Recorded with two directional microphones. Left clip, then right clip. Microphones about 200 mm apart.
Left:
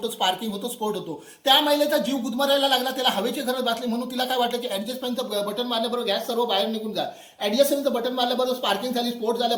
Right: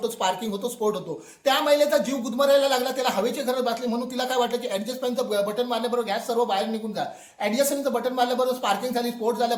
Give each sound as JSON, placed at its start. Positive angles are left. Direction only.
{"t": 0.0, "sound": "a man's voice", "side_deg": -25}